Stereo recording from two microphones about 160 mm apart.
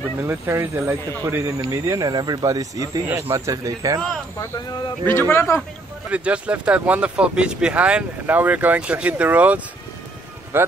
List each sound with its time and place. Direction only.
0.2 s speech: 15° right (ahead or behind)
5.3 s a man's voice: 15° left (ahead or behind)
6.0 s speech: 5° right (ahead or behind)